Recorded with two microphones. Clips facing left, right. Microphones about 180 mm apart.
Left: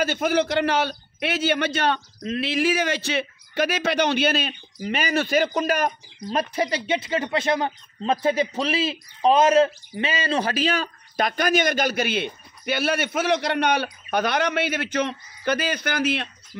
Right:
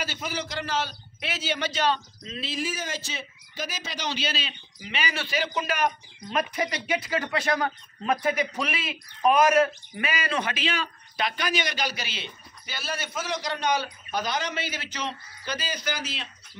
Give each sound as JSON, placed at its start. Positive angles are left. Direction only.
{"t": 0.0, "sound": "a man's voice", "side_deg": 55}